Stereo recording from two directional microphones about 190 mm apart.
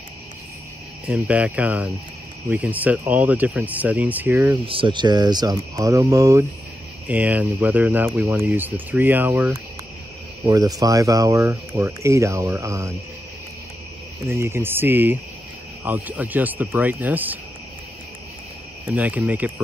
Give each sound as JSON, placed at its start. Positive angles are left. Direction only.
{"t": 1.0, "sound": "speech", "side_deg": -5}
{"t": 4.6, "sound": "speech", "side_deg": -25}
{"t": 14.3, "sound": "speech", "side_deg": -15}
{"t": 18.9, "sound": "speech", "side_deg": -10}